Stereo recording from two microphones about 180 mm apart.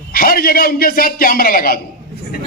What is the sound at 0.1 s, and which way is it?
A man's voice, 55° left (ahead or behind).